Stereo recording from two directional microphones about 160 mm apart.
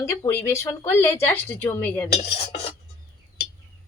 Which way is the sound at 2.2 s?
35° left (ahead or behind).